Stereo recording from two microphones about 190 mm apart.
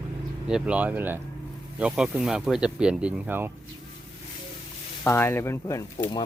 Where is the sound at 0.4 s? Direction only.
5° right (ahead or behind).